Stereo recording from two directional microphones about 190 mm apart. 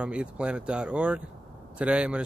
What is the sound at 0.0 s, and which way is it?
Speech, 5° right (ahead or behind).